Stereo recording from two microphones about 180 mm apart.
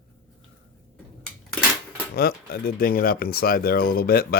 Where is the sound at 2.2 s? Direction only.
60° left (ahead or behind).